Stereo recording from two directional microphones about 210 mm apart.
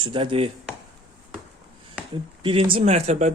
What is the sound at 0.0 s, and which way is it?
Speech, 25° right (ahead or behind).